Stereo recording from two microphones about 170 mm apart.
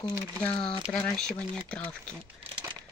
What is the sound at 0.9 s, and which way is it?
Speech, 5° left (ahead or behind).